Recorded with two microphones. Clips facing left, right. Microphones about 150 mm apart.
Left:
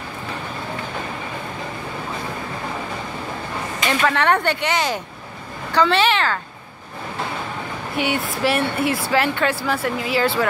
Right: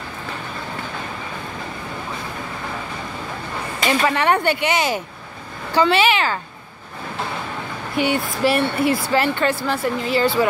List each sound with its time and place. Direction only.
4.0 s speech: 5° right (ahead or behind)
8.0 s speech: centre (ahead or behind)